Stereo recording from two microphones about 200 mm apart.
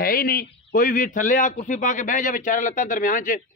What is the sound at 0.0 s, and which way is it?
Speech, 45° left (ahead or behind).